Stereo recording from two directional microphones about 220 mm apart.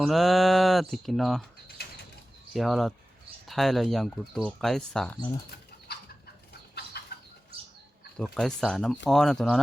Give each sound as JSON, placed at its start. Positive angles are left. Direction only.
{"t": 0.0, "sound": "speech", "side_deg": 0}
{"t": 1.6, "sound": "bird", "side_deg": 50}
{"t": 2.5, "sound": "speech", "side_deg": 0}
{"t": 7.1, "sound": "bird flight", "side_deg": 45}
{"t": 8.2, "sound": "speech", "side_deg": 5}